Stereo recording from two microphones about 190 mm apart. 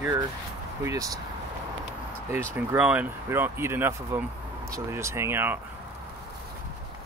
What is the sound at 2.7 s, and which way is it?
Speech, 10° right (ahead or behind).